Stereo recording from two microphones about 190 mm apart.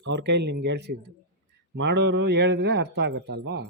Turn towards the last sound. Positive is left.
turn(degrees=-65)  # may be behind; listen again after turning